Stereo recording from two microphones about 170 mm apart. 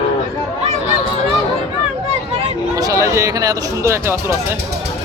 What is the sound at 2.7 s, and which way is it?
Speech, 20° right (ahead or behind).